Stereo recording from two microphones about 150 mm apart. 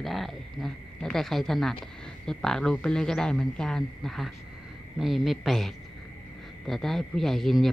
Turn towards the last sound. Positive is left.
turn(degrees=0)  # may be behind; listen again after turning